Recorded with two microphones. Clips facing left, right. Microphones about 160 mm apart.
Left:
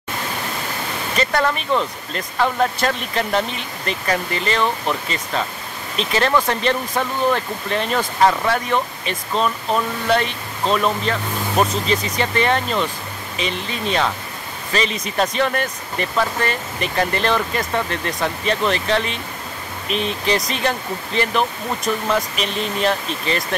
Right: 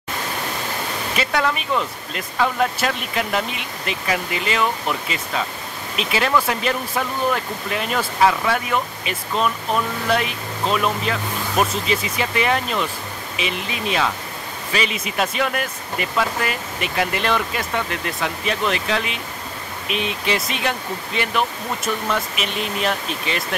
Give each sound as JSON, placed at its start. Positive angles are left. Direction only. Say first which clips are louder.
{"t": 1.1, "sound": "speech", "louder": "left 2 dB", "side_deg": -5}
{"t": 15.0, "sound": "speech", "louder": "left 2 dB", "side_deg": -5}